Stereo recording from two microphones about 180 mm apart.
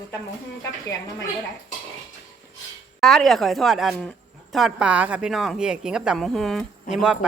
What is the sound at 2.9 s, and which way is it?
Speech, centre (ahead or behind).